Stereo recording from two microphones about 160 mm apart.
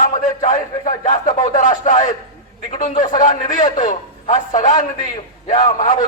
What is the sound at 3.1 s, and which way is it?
A man's voice, 50° left (ahead or behind).